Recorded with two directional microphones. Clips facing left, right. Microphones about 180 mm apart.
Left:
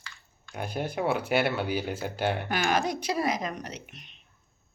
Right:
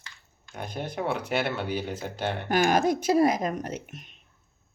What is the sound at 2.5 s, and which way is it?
Speech, 45° right (ahead or behind).